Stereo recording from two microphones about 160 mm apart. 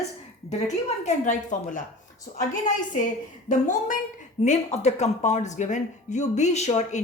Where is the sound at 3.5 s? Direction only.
55° left (ahead or behind).